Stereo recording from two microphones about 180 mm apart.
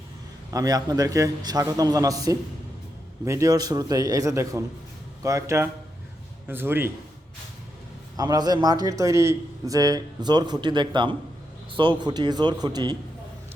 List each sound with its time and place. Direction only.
0.5 s a man's voice: 20° right (ahead or behind)
8.1 s a man's voice: 20° right (ahead or behind)